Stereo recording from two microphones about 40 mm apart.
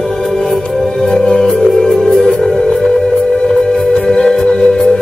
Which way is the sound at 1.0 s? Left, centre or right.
Centre.